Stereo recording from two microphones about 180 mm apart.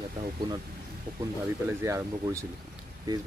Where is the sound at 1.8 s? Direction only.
15° right (ahead or behind).